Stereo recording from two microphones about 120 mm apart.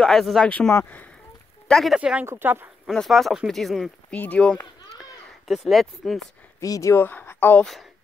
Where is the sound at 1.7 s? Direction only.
Centre (ahead or behind).